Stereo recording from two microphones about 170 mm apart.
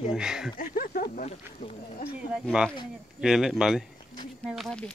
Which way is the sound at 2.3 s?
5° right (ahead or behind).